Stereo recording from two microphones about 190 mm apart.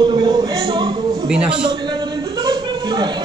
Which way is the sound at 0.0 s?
20° right (ahead or behind).